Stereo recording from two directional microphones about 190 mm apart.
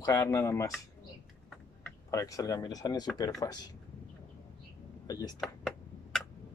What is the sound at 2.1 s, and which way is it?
Speech, 15° left (ahead or behind).